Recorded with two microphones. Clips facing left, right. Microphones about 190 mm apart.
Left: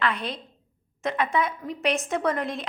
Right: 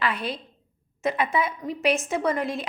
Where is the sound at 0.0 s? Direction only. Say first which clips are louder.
Even; 5° right (ahead or behind).